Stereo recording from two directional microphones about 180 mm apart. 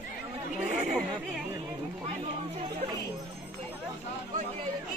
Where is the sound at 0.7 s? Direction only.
40° right (ahead or behind).